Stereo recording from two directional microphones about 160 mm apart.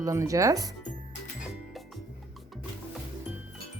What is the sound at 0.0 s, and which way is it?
Speech, 20° right (ahead or behind).